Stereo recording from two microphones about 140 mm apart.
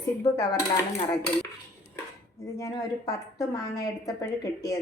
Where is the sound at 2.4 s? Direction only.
20° left (ahead or behind).